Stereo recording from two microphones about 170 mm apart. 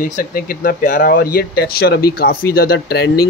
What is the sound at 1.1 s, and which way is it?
Speech, 65° left (ahead or behind).